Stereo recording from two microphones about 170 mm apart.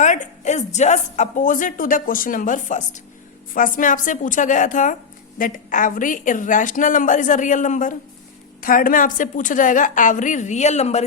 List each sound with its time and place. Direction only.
0.0 s a woman's voice: 45° left (ahead or behind)